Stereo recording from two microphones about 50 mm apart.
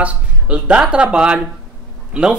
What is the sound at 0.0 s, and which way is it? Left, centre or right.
Speech, right.